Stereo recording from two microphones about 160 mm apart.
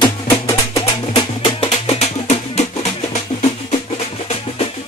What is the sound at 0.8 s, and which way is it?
Music, 30° left (ahead or behind).